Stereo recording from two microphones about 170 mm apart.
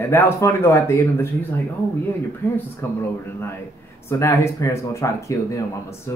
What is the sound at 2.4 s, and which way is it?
Speech, 10° left (ahead or behind).